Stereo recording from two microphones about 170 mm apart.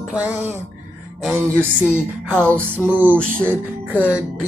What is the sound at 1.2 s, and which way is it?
Music, centre (ahead or behind).